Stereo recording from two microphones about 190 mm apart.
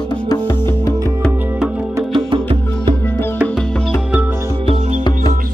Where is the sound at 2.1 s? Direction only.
25° right (ahead or behind).